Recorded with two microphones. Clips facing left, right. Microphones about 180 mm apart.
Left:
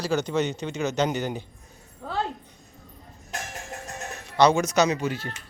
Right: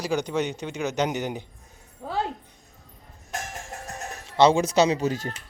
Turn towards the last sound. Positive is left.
turn(degrees=-40)  # may be behind; listen again after turning